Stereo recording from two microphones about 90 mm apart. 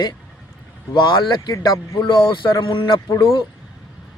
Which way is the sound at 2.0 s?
65° left (ahead or behind).